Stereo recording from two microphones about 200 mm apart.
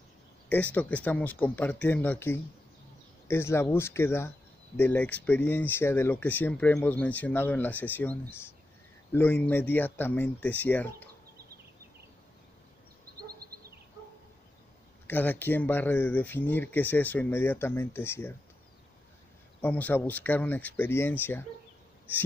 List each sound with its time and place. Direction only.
0.5 s speech: 10° left (ahead or behind)
13.3 s a sound: 50° right (ahead or behind)
15.0 s speech: 10° left (ahead or behind)
19.6 s speech: 10° left (ahead or behind)